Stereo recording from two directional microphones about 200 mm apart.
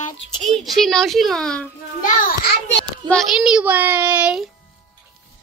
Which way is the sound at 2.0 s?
45° left (ahead or behind).